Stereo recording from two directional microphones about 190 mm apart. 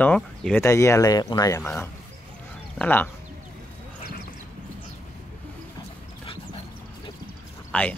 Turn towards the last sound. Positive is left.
turn(degrees=10)  # may be behind; listen again after turning